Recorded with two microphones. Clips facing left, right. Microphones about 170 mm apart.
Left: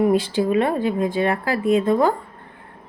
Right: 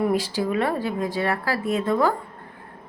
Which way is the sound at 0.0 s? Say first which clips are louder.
Left 5 dB; 25° left (ahead or behind).